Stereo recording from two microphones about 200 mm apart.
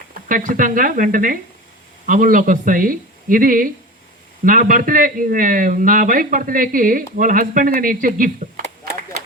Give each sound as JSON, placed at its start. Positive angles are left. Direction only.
{"t": 0.1, "sound": "a man's voice", "side_deg": -40}